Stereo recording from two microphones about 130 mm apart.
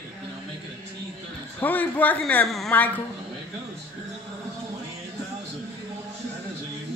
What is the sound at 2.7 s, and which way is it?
Speech, 15° left (ahead or behind).